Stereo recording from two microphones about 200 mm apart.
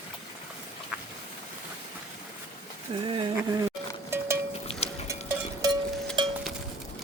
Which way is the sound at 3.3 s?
15° right (ahead or behind).